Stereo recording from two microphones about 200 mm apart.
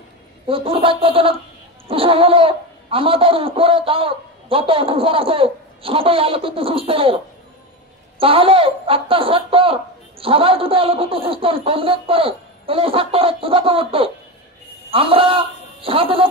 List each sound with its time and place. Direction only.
0.5 s speech: 25° right (ahead or behind)
8.2 s a man's voice: 25° right (ahead or behind)